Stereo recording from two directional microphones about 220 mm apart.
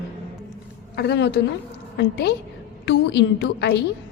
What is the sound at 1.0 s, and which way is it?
A woman's voice, 50° left (ahead or behind).